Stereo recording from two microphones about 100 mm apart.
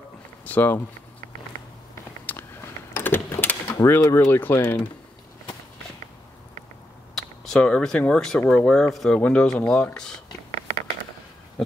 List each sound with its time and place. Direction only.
0.5 s speech: 20° left (ahead or behind)
2.3 s a sound: 15° left (ahead or behind)
3.7 s speech: 30° left (ahead or behind)
7.2 s speech: 5° left (ahead or behind)